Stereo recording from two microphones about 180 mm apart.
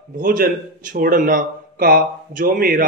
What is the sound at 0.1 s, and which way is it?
Speech, 50° right (ahead or behind).